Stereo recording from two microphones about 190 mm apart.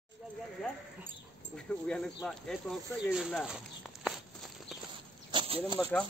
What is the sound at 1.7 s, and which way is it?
Speech, 5° left (ahead or behind).